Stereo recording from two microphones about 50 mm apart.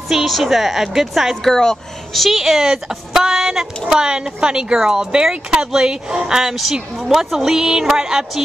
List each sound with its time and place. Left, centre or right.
0.1 s a woman's voice: centre
1.3 s speech: centre
2.2 s a woman's voice: centre
7.3 s a woman's voice: centre